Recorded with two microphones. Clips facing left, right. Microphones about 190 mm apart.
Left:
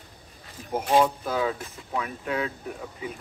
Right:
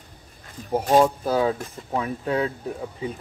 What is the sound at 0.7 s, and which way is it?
Speech, 45° right (ahead or behind).